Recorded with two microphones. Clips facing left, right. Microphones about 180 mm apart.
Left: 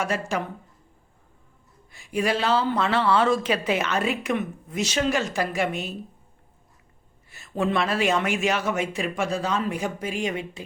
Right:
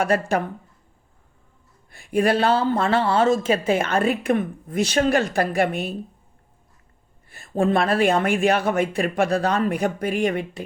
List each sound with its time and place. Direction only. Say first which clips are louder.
0.0 s speech: right 6 dB; 55° right (ahead or behind)
1.9 s speech: right 5 dB; 55° right (ahead or behind)
7.3 s speech: right 5 dB; 50° right (ahead or behind)